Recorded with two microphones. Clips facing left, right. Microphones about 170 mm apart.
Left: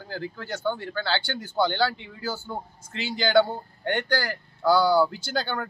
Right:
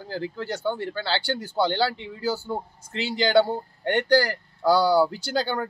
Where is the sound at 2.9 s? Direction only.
30° right (ahead or behind).